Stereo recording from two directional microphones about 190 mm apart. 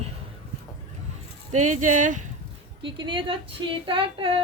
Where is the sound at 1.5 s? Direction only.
40° right (ahead or behind).